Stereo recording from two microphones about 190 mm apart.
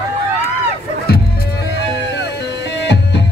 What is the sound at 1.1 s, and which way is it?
Music, 55° left (ahead or behind).